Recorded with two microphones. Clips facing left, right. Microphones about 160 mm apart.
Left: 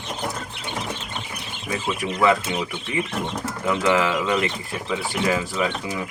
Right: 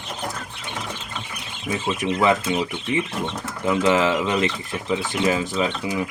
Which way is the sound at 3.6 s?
20° right (ahead or behind).